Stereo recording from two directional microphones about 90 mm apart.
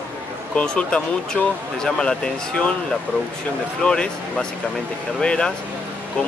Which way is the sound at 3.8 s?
10° left (ahead or behind).